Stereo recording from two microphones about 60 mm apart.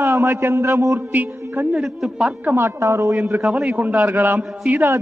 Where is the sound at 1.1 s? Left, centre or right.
Right.